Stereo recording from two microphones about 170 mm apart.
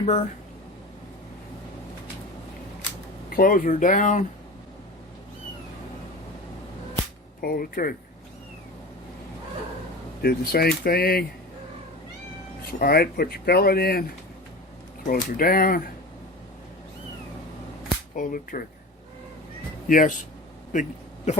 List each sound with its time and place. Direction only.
0.0 s speech: 40° left (ahead or behind)
3.2 s speech: 55° left (ahead or behind)
7.4 s speech: 60° left (ahead or behind)
10.2 s speech: 65° left (ahead or behind)
12.8 s speech: 65° left (ahead or behind)
15.0 s speech: 60° left (ahead or behind)
18.1 s speech: 50° left (ahead or behind)
19.9 s speech: 50° left (ahead or behind)
21.3 s a sound: 40° left (ahead or behind)